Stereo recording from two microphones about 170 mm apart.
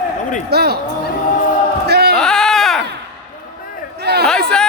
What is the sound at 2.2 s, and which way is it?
Baby cry, 5° left (ahead or behind).